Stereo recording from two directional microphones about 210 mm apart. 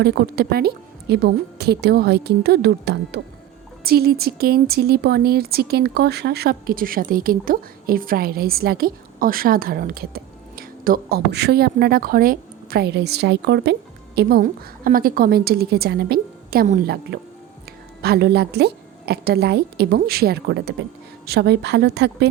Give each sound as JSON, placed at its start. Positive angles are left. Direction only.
{"t": 0.0, "sound": "speech", "side_deg": -50}